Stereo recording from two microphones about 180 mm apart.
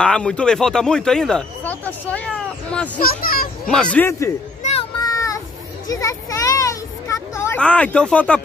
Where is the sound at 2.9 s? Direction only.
55° left (ahead or behind).